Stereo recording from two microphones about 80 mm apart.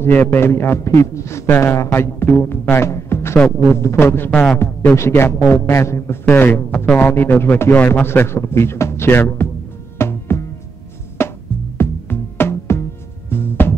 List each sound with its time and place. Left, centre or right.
0.0 s a man's voice: left
4.3 s music: centre
4.6 s a man's voice: left
6.2 s a man's voice: left
9.9 s music: left
11.8 s music: left